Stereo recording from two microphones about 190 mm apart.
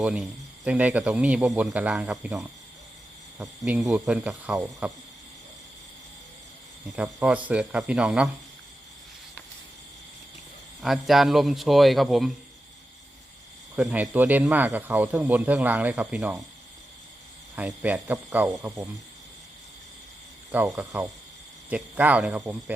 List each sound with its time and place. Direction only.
0.0 s a man's voice: 5° right (ahead or behind)
3.6 s a man's voice: centre (ahead or behind)
6.9 s a man's voice: 5° right (ahead or behind)
10.8 s a man's voice: centre (ahead or behind)
13.7 s a man's voice: 10° right (ahead or behind)
17.5 s a man's voice: 10° right (ahead or behind)
20.5 s a man's voice: 10° right (ahead or behind)